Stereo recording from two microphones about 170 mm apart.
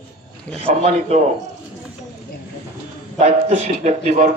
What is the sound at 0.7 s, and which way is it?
Speech, 40° right (ahead or behind).